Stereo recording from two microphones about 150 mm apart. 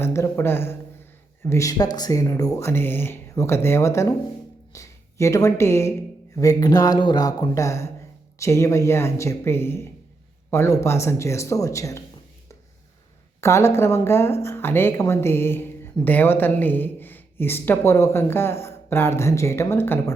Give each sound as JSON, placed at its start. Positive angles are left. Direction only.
{"t": 0.0, "sound": "speech", "side_deg": 15}
{"t": 13.4, "sound": "speech", "side_deg": 20}